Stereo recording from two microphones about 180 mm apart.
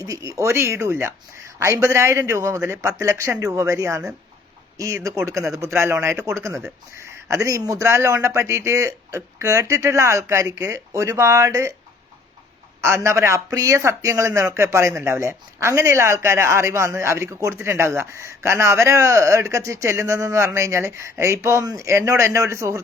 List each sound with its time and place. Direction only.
0.0 s a man's voice: 20° right (ahead or behind)
12.8 s a man's voice: 15° right (ahead or behind)